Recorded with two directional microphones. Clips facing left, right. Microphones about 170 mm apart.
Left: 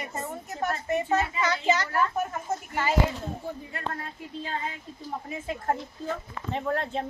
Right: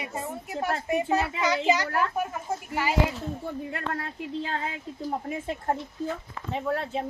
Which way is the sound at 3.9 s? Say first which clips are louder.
Right 5 dB; 75° right (ahead or behind).